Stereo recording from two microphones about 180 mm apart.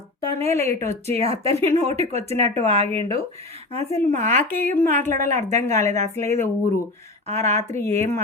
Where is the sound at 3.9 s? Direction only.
15° left (ahead or behind).